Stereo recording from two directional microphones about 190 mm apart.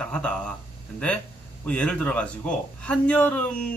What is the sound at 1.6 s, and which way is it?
Speech, 5° left (ahead or behind).